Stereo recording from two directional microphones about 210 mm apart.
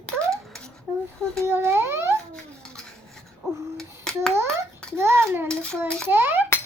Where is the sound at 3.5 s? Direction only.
15° right (ahead or behind).